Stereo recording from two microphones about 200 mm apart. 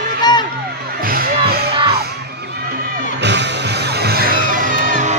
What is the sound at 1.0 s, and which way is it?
Music, 50° right (ahead or behind).